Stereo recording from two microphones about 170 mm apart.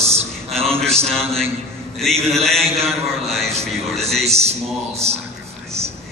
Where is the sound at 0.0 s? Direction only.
35° right (ahead or behind).